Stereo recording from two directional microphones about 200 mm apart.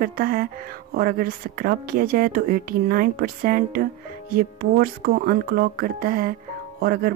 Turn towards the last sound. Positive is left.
turn(degrees=-50)  # may be behind; listen again after turning